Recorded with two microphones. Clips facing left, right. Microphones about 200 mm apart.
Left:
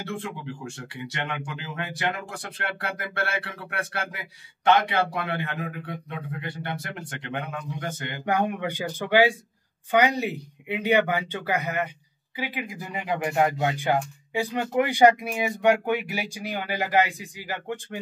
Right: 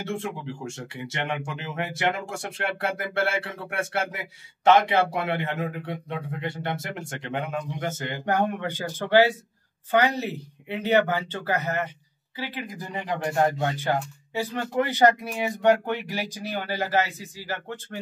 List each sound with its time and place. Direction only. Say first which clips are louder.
0.0 s speech: right 2 dB; 25° right (ahead or behind)
8.3 s speech: even; 10° left (ahead or behind)